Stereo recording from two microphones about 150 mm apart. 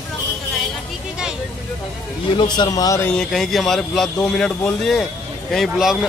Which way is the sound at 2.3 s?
30° left (ahead or behind).